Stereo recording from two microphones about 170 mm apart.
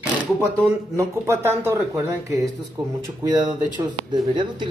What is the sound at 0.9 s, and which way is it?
Speech, 15° right (ahead or behind).